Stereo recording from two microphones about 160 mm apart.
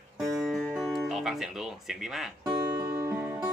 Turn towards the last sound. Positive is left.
turn(degrees=-15)  # may be behind; listen again after turning